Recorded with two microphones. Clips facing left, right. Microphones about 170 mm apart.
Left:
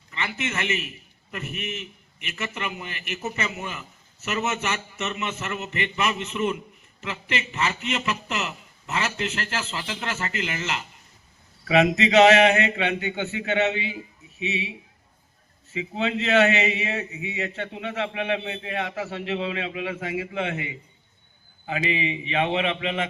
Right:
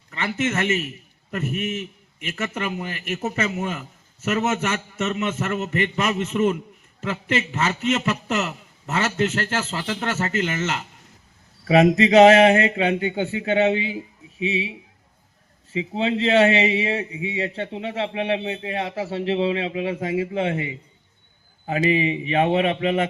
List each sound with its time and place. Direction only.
0.1 s a man's voice: 45° right (ahead or behind)
15.7 s a man's voice: 30° right (ahead or behind)